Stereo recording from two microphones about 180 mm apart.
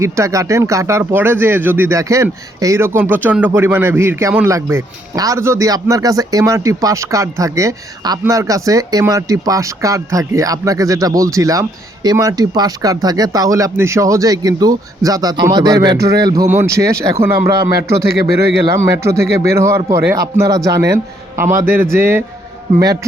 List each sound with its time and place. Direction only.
0.0 s speech: 15° right (ahead or behind)
18.3 s speech: 15° right (ahead or behind)